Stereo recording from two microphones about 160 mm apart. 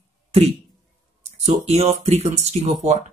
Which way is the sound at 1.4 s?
40° right (ahead or behind).